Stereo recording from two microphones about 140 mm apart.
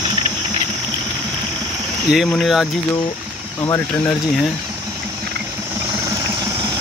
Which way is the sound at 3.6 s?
20° left (ahead or behind).